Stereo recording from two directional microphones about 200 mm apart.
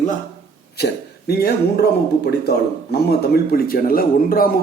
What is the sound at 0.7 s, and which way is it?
A man's voice, 55° left (ahead or behind).